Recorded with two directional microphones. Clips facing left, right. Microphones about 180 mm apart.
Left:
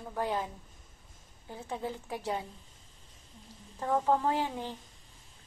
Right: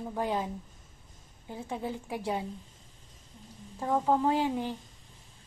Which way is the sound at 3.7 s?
10° right (ahead or behind).